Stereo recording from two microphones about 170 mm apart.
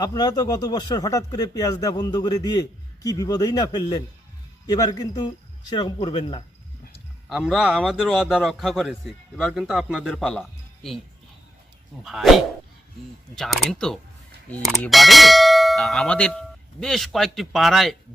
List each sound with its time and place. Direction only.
0.0 s speech: 25° left (ahead or behind)
7.3 s a man's voice: centre (ahead or behind)
12.0 s a man's voice: centre (ahead or behind)